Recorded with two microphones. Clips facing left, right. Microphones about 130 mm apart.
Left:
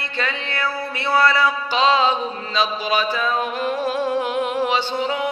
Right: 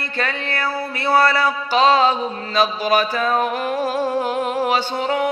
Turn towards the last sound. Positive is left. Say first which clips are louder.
# right 2 dB
turn(degrees=-45)  # may be behind; listen again after turning